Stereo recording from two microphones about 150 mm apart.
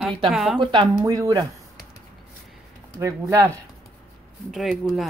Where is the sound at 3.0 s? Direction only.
20° right (ahead or behind).